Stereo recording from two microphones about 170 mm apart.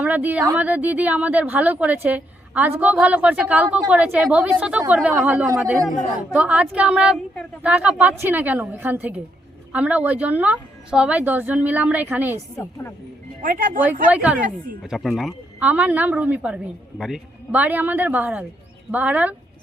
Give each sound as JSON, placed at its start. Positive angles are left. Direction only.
{"t": 0.0, "sound": "a woman's voice", "side_deg": -10}
{"t": 13.4, "sound": "speech", "side_deg": -55}
{"t": 14.1, "sound": "a woman's voice", "side_deg": -10}